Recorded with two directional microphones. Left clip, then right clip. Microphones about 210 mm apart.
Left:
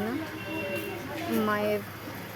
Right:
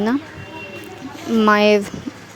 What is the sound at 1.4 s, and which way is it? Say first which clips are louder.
Speech: right 15 dB; 40° right (ahead or behind).